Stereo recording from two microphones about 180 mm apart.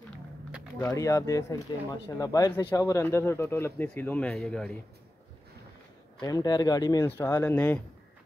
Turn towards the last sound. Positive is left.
turn(degrees=10)  # may be behind; listen again after turning